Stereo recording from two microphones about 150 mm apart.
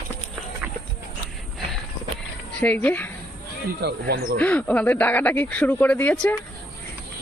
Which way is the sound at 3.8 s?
90° right.